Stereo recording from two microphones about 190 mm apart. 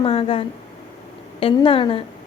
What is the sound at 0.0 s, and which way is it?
Speech, 30° left (ahead or behind).